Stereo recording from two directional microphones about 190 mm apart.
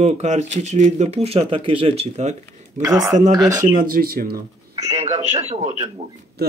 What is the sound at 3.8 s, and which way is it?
Speech, 50° right (ahead or behind).